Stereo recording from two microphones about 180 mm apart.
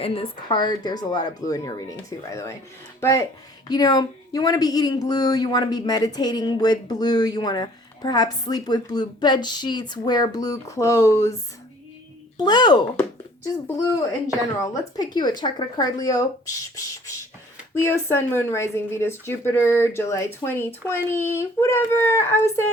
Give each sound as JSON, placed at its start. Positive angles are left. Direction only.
{"t": 0.0, "sound": "speech", "side_deg": 30}
{"t": 12.4, "sound": "speech", "side_deg": 25}
{"t": 14.6, "sound": "speech", "side_deg": 20}
{"t": 17.7, "sound": "speech", "side_deg": 15}